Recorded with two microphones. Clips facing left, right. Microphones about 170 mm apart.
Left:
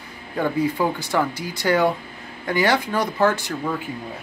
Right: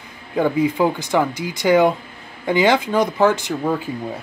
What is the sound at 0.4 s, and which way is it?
Speech, 15° right (ahead or behind).